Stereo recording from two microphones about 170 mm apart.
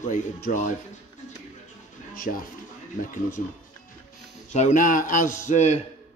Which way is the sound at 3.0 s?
50° left (ahead or behind).